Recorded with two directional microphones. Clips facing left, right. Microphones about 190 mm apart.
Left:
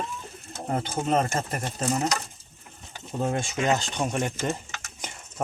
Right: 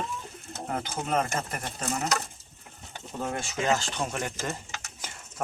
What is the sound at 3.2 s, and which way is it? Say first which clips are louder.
Speech: left 4 dB; 20° left (ahead or behind).